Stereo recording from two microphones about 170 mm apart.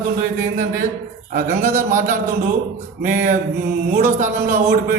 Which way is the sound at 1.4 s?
50° right (ahead or behind).